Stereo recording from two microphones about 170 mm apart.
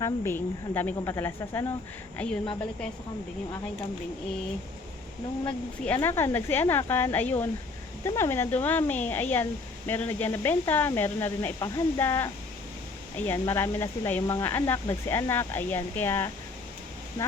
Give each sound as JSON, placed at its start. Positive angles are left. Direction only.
{"t": 0.0, "sound": "speech", "side_deg": 15}
{"t": 5.5, "sound": "speech", "side_deg": 10}